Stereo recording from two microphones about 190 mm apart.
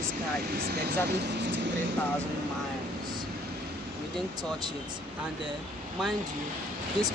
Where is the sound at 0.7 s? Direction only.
55° right (ahead or behind).